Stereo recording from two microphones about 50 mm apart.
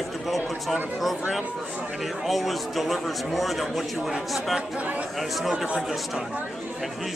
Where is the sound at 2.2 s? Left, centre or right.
Centre.